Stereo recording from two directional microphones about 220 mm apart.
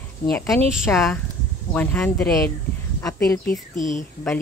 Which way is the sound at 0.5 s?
5° right (ahead or behind).